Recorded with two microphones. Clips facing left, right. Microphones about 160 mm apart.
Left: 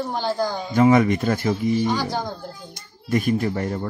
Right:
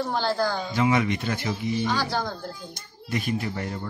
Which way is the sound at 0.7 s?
50° left (ahead or behind).